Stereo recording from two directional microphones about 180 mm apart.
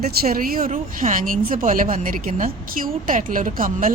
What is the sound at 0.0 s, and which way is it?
Speech, 55° right (ahead or behind).